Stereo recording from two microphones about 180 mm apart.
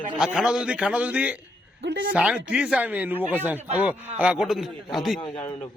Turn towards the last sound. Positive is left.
turn(degrees=30)  # may be behind; listen again after turning